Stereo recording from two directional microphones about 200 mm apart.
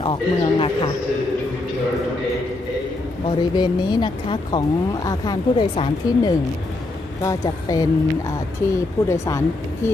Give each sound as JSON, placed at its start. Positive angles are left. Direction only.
{"t": 0.0, "sound": "speech", "side_deg": 25}
{"t": 3.3, "sound": "speech", "side_deg": 20}